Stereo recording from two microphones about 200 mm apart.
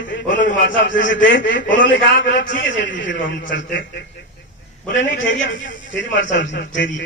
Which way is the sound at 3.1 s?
65° left (ahead or behind).